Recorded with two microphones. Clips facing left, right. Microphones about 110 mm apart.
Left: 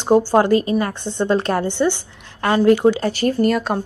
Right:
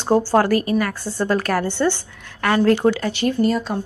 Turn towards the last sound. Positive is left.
turn(degrees=65)  # may be behind; listen again after turning